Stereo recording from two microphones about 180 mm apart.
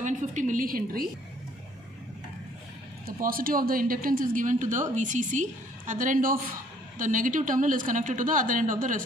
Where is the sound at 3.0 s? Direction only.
55° right (ahead or behind).